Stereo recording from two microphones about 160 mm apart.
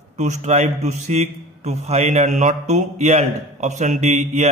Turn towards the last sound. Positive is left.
turn(degrees=-45)  # may be behind; listen again after turning